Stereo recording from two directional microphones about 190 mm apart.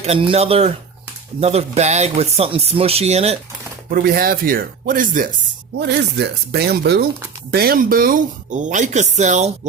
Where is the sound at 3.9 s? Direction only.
50° right (ahead or behind).